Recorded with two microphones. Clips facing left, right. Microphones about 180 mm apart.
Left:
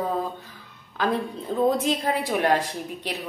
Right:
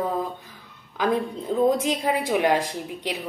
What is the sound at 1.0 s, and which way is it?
A woman's voice, 15° right (ahead or behind).